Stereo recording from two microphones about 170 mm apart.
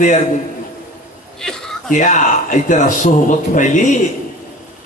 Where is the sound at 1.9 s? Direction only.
45° left (ahead or behind).